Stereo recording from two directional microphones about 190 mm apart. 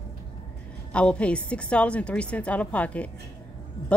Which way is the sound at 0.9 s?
5° left (ahead or behind).